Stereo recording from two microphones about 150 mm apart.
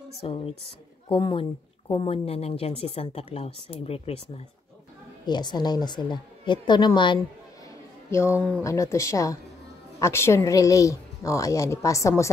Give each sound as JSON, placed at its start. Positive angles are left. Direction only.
{"t": 0.2, "sound": "speech", "side_deg": 40}
{"t": 5.2, "sound": "speech", "side_deg": 30}
{"t": 8.6, "sound": "speech", "side_deg": 20}